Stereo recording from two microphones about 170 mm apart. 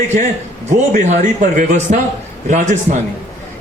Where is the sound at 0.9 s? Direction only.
45° right (ahead or behind).